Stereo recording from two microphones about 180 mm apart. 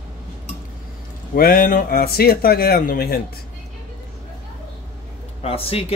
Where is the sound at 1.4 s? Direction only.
55° left (ahead or behind).